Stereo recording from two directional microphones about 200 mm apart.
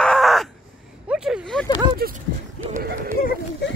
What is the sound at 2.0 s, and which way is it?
Speech, 50° right (ahead or behind).